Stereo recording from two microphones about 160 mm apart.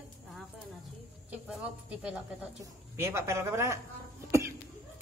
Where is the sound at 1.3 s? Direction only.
10° right (ahead or behind).